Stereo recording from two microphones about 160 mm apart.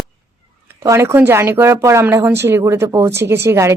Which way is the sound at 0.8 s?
15° right (ahead or behind).